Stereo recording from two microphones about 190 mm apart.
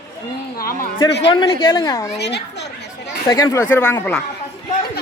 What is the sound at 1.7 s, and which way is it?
Speech, 15° left (ahead or behind).